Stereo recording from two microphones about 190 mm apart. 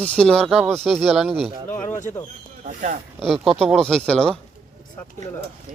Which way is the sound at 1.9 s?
40° left (ahead or behind).